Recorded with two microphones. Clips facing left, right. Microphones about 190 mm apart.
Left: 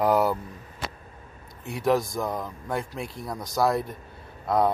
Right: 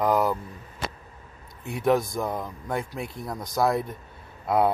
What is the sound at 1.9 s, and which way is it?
Speech, centre (ahead or behind).